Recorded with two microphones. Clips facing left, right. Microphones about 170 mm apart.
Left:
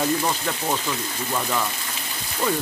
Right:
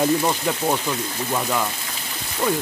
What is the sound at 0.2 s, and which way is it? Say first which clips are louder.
Speech: right 4 dB; 15° right (ahead or behind).